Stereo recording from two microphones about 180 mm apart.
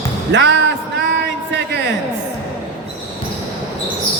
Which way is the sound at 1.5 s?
70° right (ahead or behind).